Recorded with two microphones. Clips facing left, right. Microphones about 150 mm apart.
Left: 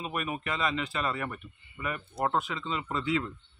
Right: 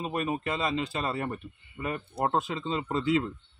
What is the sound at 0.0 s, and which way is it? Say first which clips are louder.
A man's voice: right 4 dB; 30° right (ahead or behind).